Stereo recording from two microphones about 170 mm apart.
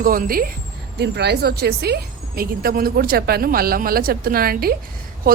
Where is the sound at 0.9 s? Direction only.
75° right (ahead or behind).